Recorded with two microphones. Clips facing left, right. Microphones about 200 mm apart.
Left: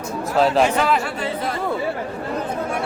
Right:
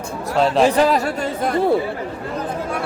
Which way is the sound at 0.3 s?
Centre (ahead or behind).